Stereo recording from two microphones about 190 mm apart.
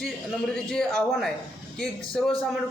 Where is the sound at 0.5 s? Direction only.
5° left (ahead or behind).